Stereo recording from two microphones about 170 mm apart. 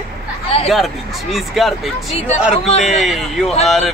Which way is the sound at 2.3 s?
40° left (ahead or behind).